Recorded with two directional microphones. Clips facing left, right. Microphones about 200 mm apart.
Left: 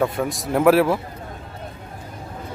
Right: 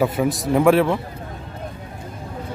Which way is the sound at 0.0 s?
5° right (ahead or behind).